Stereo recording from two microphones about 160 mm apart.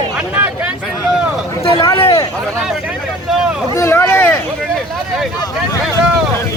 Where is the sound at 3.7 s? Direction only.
15° left (ahead or behind).